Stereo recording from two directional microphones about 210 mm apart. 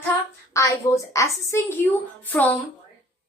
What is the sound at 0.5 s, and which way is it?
A woman's voice, 15° left (ahead or behind).